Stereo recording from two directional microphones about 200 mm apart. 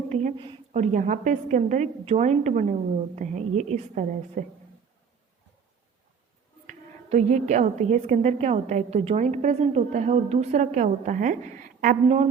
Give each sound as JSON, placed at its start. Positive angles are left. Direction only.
{"t": 0.1, "sound": "a sound", "side_deg": -35}
{"t": 0.4, "sound": "a woman's voice", "side_deg": -35}
{"t": 6.7, "sound": "a woman's voice", "side_deg": -35}